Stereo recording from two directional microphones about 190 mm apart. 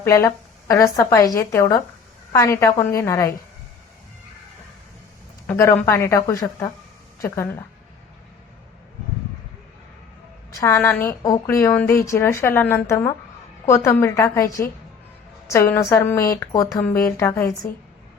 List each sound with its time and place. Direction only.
0.0 s a woman's voice: 15° left (ahead or behind)
5.5 s a woman's voice: 15° left (ahead or behind)
10.5 s a woman's voice: 15° left (ahead or behind)